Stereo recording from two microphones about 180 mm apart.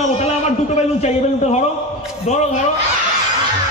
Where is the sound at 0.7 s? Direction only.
35° left (ahead or behind).